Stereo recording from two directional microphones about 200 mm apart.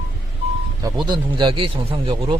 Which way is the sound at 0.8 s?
20° right (ahead or behind).